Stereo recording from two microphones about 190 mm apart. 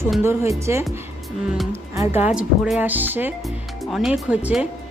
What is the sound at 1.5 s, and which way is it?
Music, centre (ahead or behind).